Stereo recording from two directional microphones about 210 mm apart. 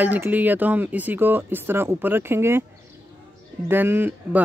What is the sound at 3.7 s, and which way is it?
Speech, 10° right (ahead or behind).